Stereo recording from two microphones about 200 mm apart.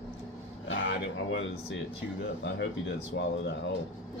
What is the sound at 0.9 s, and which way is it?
Speech, 60° left (ahead or behind).